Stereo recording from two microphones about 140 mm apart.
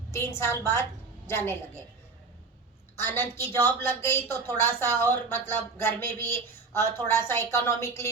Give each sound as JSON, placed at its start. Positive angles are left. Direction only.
{"t": 0.3, "sound": "a woman's voice", "side_deg": 20}
{"t": 3.0, "sound": "a woman's voice", "side_deg": 15}